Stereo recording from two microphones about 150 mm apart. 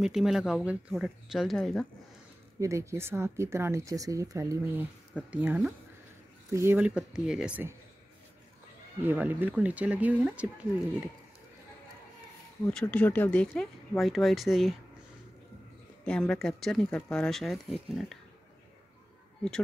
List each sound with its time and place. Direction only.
0.0 s speech: 5° right (ahead or behind)
2.6 s speech: 20° right (ahead or behind)
5.3 s speech: 10° right (ahead or behind)
9.0 s speech: 15° right (ahead or behind)
12.7 s speech: 10° left (ahead or behind)
16.1 s speech: 5° left (ahead or behind)